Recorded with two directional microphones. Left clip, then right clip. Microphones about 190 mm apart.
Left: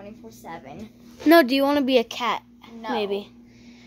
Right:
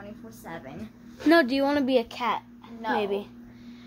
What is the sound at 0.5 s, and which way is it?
A woman's voice, 45° left (ahead or behind).